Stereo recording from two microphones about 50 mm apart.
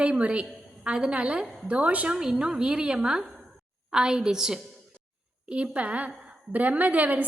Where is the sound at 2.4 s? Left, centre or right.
Centre.